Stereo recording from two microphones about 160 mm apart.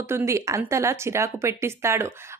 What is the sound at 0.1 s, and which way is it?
Speech, 20° right (ahead or behind).